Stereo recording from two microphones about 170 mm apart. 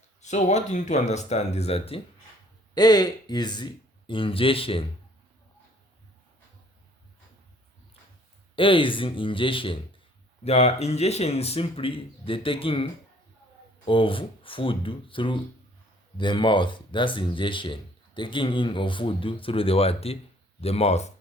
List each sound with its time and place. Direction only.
0.2 s speech: 45° left (ahead or behind)
2.7 s speech: 25° left (ahead or behind)
8.5 s speech: 30° left (ahead or behind)